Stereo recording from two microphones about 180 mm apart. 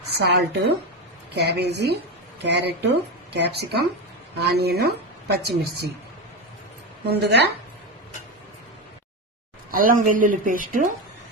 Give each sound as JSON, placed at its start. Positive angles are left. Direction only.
{"t": 0.0, "sound": "a woman's voice", "side_deg": -70}
{"t": 7.0, "sound": "a woman's voice", "side_deg": -65}
{"t": 9.7, "sound": "a woman's voice", "side_deg": -50}